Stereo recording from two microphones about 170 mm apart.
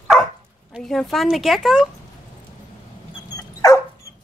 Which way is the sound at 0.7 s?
Centre (ahead or behind).